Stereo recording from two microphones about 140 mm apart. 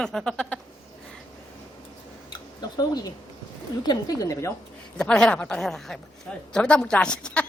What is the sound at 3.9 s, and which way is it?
Speech, 25° left (ahead or behind).